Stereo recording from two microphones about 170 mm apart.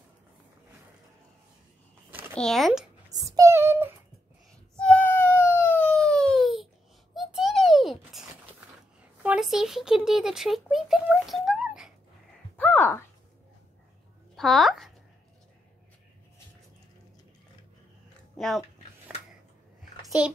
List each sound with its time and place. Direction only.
2.3 s speech: 5° left (ahead or behind)
3.1 s child singing: 20° right (ahead or behind)
4.7 s a sound: 5° left (ahead or behind)
9.2 s speech: 5° right (ahead or behind)
12.5 s a sound: 10° left (ahead or behind)
14.3 s a child's voice: centre (ahead or behind)